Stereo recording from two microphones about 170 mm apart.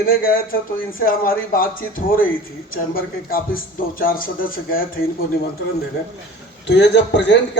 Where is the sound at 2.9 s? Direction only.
55° left (ahead or behind).